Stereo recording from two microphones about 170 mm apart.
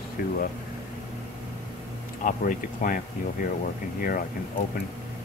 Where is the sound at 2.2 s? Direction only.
55° left (ahead or behind).